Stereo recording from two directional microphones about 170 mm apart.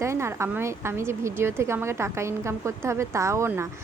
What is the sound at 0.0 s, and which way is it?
A woman's voice, 15° right (ahead or behind).